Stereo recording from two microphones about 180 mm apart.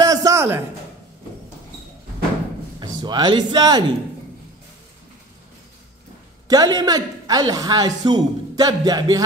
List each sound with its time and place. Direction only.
0.0 s a sound: 20° right (ahead or behind)
2.8 s speech: 25° right (ahead or behind)
6.4 s a man's voice: 20° right (ahead or behind)